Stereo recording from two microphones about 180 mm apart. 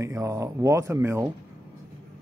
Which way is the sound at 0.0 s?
15° right (ahead or behind).